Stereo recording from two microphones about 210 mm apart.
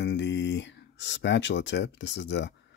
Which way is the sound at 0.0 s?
55° left (ahead or behind).